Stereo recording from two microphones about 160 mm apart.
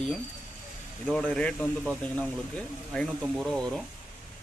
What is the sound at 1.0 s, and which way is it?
A man's voice, 5° left (ahead or behind).